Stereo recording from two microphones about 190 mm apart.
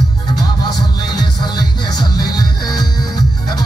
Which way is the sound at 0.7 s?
20° left (ahead or behind).